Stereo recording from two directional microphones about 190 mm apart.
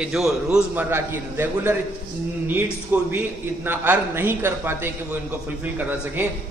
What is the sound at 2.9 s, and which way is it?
A man's voice, 10° right (ahead or behind).